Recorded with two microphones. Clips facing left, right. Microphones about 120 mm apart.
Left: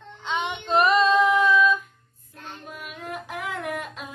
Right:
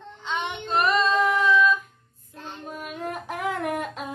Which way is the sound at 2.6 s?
40° right (ahead or behind).